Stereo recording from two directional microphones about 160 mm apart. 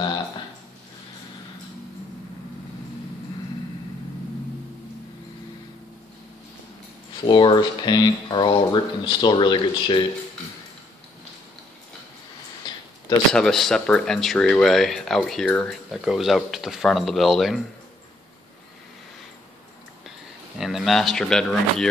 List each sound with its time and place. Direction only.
7.2 s speech: 30° left (ahead or behind)
12.6 s a sound: 30° left (ahead or behind)
13.3 s speech: centre (ahead or behind)
20.5 s speech: centre (ahead or behind)